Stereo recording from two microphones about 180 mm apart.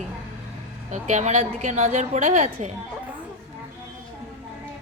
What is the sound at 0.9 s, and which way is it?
A woman's voice, 40° right (ahead or behind).